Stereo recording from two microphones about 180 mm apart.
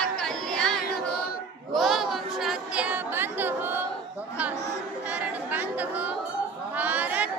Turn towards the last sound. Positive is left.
turn(degrees=-10)  # may be behind; listen again after turning